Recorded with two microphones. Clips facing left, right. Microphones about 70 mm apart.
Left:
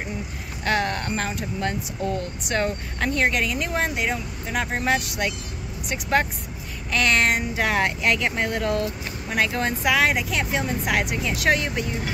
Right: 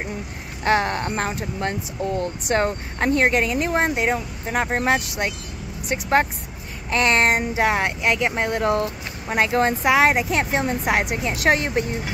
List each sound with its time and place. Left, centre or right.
0.7 s speech: right
7.5 s speech: right